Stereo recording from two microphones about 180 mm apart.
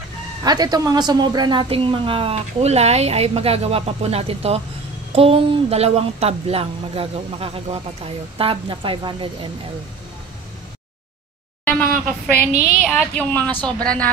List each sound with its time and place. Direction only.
0.4 s speech: 20° right (ahead or behind)
11.8 s a woman's voice: 5° left (ahead or behind)